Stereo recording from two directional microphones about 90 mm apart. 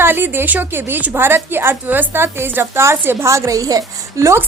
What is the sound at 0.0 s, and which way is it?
A woman's voice, 25° right (ahead or behind).